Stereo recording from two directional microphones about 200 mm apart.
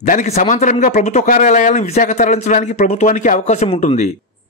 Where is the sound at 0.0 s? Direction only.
35° left (ahead or behind).